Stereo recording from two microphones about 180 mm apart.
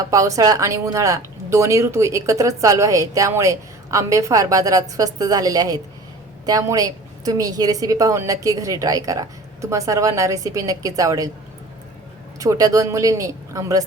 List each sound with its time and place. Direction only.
0.0 s a woman's voice: 20° right (ahead or behind)
12.4 s a woman's voice: 20° right (ahead or behind)